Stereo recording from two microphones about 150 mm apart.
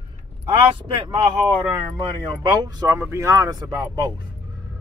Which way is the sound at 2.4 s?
30° right (ahead or behind).